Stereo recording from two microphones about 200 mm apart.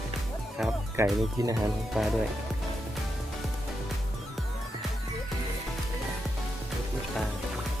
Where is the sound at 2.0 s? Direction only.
Centre (ahead or behind).